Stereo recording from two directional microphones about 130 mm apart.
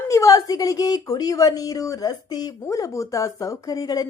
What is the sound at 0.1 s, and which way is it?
A woman's voice, 25° left (ahead or behind).